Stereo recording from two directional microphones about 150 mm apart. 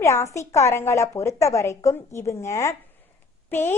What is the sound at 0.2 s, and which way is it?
A woman's voice, 20° left (ahead or behind).